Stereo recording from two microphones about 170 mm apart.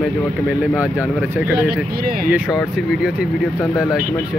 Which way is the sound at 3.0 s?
5° right (ahead or behind).